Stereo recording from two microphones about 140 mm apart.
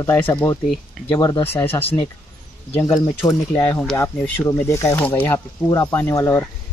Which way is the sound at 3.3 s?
25° left (ahead or behind).